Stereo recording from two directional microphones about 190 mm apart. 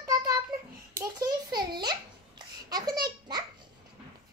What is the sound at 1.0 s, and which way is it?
Babbling, 20° right (ahead or behind).